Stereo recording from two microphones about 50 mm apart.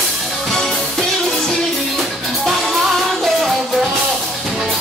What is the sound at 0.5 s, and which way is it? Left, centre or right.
Music, centre.